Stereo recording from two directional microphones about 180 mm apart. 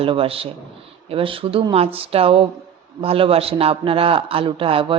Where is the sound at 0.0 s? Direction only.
30° right (ahead or behind).